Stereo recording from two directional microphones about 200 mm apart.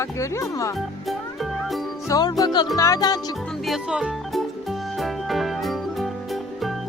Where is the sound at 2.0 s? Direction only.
20° left (ahead or behind).